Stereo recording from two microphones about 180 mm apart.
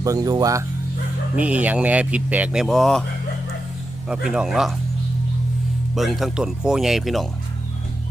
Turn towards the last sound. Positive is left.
turn(degrees=0)  # may be behind; listen again after turning